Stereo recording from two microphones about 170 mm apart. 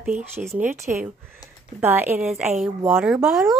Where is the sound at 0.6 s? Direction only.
15° right (ahead or behind).